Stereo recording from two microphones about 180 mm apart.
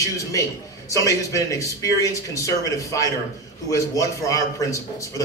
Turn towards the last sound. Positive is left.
turn(degrees=20)  # may be behind; listen again after turning